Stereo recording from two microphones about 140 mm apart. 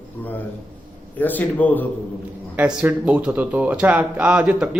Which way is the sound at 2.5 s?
10° right (ahead or behind).